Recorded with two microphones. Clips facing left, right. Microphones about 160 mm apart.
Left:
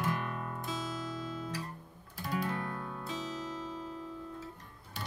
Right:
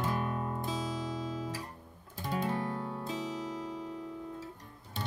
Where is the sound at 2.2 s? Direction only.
20° right (ahead or behind).